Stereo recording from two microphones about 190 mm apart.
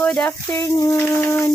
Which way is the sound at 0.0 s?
10° left (ahead or behind).